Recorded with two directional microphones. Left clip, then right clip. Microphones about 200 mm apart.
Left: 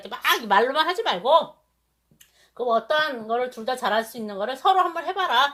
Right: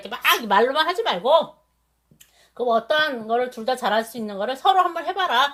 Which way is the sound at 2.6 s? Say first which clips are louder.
Right 2 dB; 25° left (ahead or behind).